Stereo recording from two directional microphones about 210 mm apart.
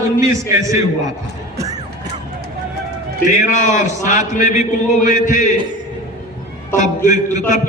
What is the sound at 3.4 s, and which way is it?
A man's voice, 35° left (ahead or behind).